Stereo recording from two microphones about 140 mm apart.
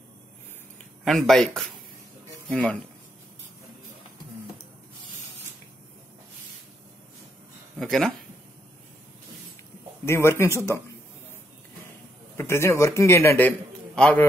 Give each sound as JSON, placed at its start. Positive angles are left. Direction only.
{"t": 1.0, "sound": "speech", "side_deg": 5}
{"t": 7.8, "sound": "speech", "side_deg": 0}
{"t": 10.0, "sound": "speech", "side_deg": 20}
{"t": 12.4, "sound": "a man's voice", "side_deg": 20}